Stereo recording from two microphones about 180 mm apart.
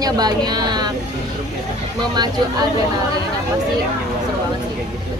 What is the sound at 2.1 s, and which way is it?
Speech, 25° right (ahead or behind).